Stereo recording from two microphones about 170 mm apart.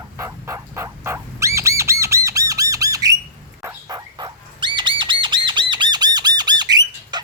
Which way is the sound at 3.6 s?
20° right (ahead or behind).